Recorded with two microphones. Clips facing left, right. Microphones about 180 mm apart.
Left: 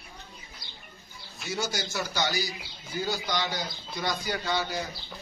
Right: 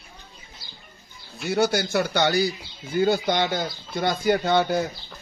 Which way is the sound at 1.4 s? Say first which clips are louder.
Right 10 dB; 60° right (ahead or behind).